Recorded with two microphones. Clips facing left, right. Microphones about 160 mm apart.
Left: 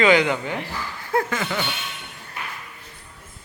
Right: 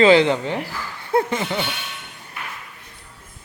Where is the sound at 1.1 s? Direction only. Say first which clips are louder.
Right 3 dB; 25° right (ahead or behind).